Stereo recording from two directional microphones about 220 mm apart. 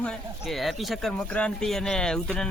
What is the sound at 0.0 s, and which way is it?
Speech, centre (ahead or behind).